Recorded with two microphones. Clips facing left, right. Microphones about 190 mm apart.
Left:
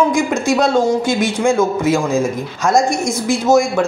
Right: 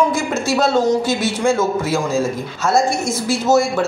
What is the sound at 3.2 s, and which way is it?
Speech, 15° left (ahead or behind).